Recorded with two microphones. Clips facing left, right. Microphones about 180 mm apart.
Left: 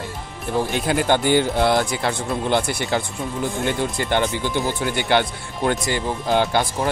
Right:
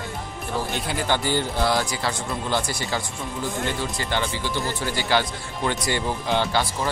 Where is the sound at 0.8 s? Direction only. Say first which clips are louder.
Left 7 dB; 55° left (ahead or behind).